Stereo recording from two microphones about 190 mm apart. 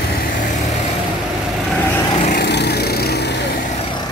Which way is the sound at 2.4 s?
60° left (ahead or behind).